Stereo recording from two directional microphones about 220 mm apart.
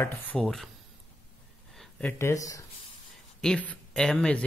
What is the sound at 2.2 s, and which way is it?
Speech, 15° left (ahead or behind).